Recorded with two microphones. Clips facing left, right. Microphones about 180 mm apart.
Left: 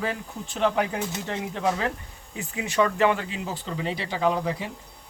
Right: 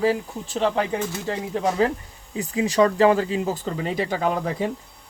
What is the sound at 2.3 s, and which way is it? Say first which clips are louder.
Speech: right 5 dB; 30° right (ahead or behind).